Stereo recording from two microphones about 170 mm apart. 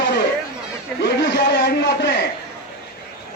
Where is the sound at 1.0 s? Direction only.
80° left.